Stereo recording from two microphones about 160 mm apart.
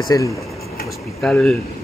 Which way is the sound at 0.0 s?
20° left (ahead or behind).